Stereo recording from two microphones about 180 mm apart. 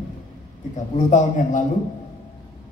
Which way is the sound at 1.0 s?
40° left (ahead or behind).